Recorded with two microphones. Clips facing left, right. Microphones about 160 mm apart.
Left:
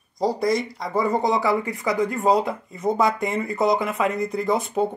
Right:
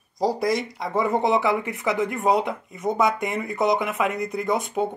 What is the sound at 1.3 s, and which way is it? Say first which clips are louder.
Speech: even; 20° right (ahead or behind).